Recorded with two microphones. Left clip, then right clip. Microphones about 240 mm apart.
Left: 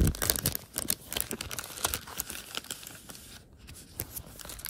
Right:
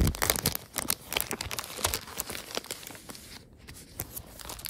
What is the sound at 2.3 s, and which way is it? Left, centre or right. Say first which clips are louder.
Tearing: right 5 dB; right.